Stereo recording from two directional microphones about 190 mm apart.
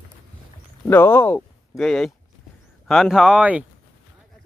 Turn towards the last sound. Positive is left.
turn(degrees=-5)  # may be behind; listen again after turning